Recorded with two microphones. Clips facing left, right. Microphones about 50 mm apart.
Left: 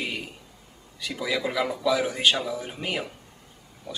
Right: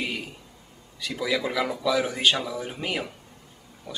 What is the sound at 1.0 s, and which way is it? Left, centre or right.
Speech, centre.